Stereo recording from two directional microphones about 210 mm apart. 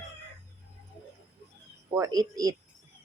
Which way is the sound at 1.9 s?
15° right (ahead or behind).